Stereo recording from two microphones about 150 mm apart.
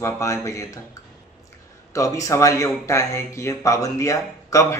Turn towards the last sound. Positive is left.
turn(degrees=20)  # may be behind; listen again after turning